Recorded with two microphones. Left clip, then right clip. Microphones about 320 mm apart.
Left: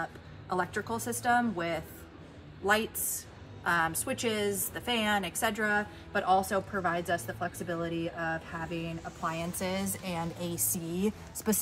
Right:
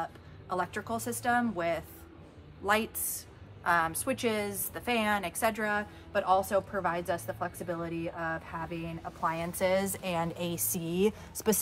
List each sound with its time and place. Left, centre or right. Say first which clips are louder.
0.0 s a woman's voice: even; centre
10.1 s a woman's voice: right 2 dB; right